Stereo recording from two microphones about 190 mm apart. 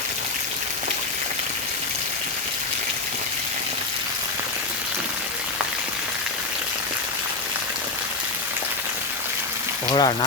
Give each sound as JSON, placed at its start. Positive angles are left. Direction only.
{"t": 9.9, "sound": "speech", "side_deg": 25}